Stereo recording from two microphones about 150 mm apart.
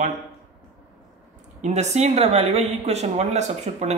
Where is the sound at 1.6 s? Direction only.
50° right (ahead or behind).